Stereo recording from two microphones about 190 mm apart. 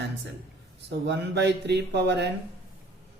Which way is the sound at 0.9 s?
65° right (ahead or behind).